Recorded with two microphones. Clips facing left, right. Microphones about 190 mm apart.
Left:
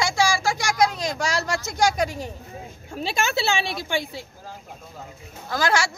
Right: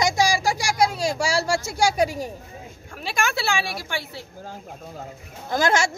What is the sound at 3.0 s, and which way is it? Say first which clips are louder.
Speech: left 1 dB; 25° left (ahead or behind).